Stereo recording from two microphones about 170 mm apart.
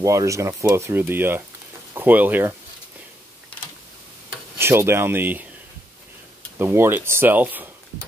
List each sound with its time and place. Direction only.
0.0 s speech: 20° right (ahead or behind)
4.6 s speech: 15° right (ahead or behind)
6.6 s speech: 15° right (ahead or behind)